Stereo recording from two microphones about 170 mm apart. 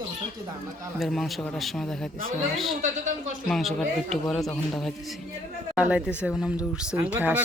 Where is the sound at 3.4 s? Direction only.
Centre (ahead or behind).